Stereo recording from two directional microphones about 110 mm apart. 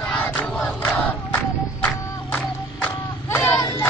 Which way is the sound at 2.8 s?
20° left (ahead or behind).